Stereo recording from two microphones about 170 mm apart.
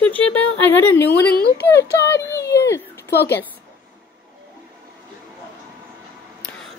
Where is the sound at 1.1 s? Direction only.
75° left (ahead or behind).